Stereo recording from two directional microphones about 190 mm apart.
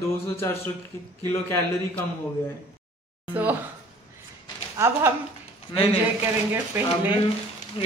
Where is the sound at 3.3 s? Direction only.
10° right (ahead or behind).